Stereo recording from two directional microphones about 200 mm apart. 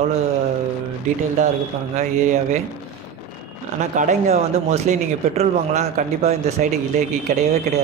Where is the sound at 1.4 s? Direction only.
35° right (ahead or behind).